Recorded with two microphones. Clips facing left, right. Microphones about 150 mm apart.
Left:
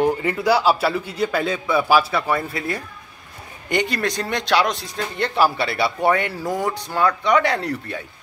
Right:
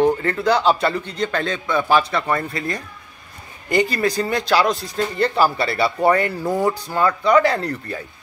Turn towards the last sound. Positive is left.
turn(degrees=0)  # may be behind; listen again after turning